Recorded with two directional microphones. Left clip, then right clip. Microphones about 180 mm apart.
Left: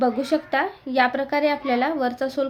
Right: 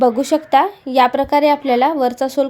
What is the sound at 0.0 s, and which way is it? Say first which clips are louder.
A woman's voice: right 7 dB; 35° right (ahead or behind).